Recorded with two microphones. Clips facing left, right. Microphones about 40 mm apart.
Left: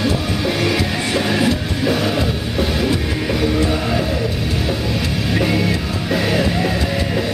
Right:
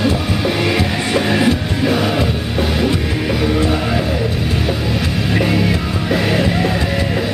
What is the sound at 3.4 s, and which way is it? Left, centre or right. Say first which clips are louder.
Music: right 1 dB; centre.